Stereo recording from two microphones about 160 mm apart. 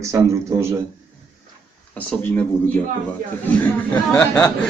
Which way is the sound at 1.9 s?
10° left (ahead or behind).